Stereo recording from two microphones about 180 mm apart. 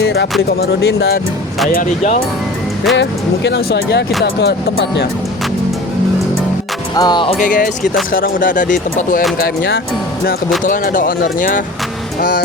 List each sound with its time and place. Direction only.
0.0 s speech: 65° left (ahead or behind)
1.7 s speech: 45° left (ahead or behind)
2.9 s speech: 75° left (ahead or behind)
6.9 s music: 25° left (ahead or behind)
7.3 s speech: 50° left (ahead or behind)
9.4 s speech: 60° left (ahead or behind)
10.6 s speech: 45° left (ahead or behind)